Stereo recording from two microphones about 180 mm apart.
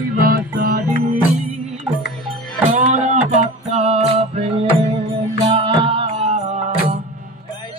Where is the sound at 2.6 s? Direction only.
45° right (ahead or behind).